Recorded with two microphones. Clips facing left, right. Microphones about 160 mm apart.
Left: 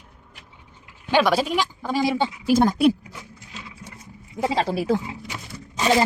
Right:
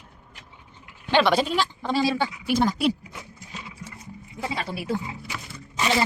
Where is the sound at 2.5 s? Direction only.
50° left (ahead or behind).